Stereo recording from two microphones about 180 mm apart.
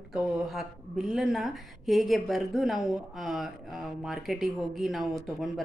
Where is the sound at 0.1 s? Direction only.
Centre (ahead or behind).